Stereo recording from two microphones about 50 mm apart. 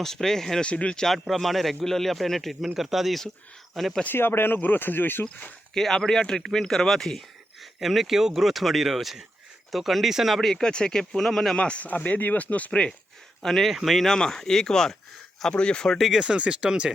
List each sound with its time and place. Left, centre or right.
0.0 s speech: centre
0.6 s speech: left
1.3 s a man's voice: centre
4.0 s speech: left
5.7 s a man's voice: centre
10.5 s speech: centre
11.5 s speech: left
13.4 s a man's voice: centre
13.7 s speech: centre
14.0 s speech: centre
15.9 s a man's voice: centre
16.2 s speech: right